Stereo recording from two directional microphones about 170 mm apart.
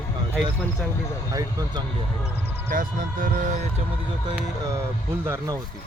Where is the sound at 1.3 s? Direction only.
20° right (ahead or behind).